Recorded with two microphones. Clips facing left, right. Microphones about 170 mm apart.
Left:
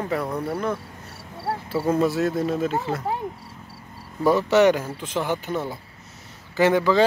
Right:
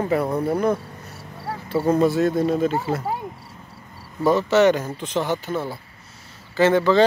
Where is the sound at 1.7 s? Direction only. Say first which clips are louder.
Right 3 dB; 5° left (ahead or behind).